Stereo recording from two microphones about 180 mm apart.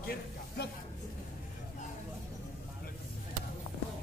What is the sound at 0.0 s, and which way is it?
Speech, 55° left (ahead or behind).